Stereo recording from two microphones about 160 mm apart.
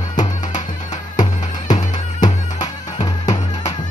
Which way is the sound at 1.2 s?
25° left (ahead or behind).